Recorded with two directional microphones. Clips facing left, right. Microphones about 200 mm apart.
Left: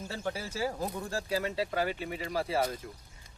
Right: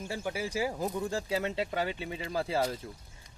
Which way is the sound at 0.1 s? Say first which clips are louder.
Right 3 dB; 15° right (ahead or behind).